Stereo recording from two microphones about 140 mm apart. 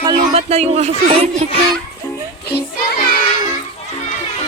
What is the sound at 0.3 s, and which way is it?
Speech, 50° right (ahead or behind).